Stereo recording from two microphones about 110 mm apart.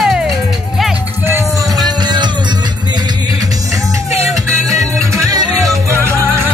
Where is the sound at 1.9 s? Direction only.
40° right (ahead or behind).